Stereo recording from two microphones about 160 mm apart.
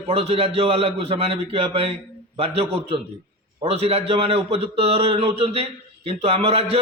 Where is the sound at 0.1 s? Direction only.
35° right (ahead or behind).